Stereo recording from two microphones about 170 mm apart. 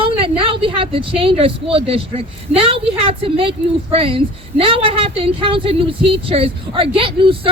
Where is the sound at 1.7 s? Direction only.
35° right (ahead or behind).